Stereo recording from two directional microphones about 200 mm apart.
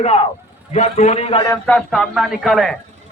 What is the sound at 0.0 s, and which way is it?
A man's voice, 30° left (ahead or behind).